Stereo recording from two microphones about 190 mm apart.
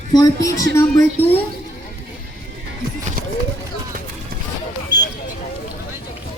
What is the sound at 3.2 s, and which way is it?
Run, 50° right (ahead or behind).